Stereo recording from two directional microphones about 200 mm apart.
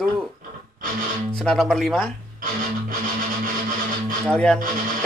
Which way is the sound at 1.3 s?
Centre (ahead or behind).